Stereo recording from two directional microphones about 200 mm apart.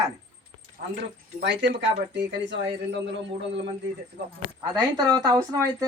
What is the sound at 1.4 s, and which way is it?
Speech, 60° right (ahead or behind).